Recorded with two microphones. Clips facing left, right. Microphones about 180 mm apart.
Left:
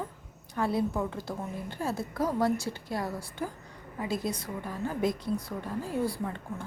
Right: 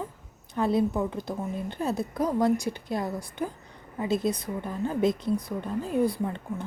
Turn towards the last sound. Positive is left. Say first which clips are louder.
# right 4 dB
turn(degrees=-20)  # may be behind; listen again after turning